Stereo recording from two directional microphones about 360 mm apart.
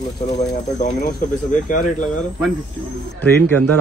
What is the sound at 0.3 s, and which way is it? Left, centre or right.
Speech, centre.